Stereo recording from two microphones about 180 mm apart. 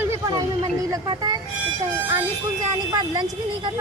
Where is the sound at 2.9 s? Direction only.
20° right (ahead or behind).